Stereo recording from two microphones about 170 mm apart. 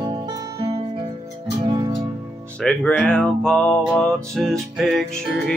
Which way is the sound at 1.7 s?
25° right (ahead or behind).